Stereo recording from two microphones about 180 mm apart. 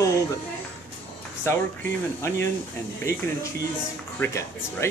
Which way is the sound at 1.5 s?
15° left (ahead or behind).